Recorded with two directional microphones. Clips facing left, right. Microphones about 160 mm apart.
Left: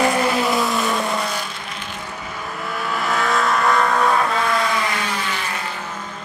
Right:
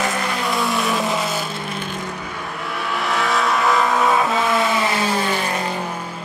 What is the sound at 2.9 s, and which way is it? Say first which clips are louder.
Vehicle: even; centre (ahead or behind).